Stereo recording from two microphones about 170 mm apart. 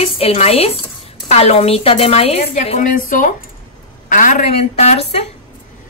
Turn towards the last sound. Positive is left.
turn(degrees=40)  # may be behind; listen again after turning